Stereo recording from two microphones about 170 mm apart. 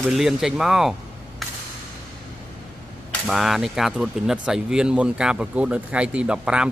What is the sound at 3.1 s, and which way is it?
Speech, centre (ahead or behind).